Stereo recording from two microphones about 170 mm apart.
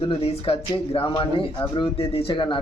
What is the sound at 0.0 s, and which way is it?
Speech, 35° left (ahead or behind).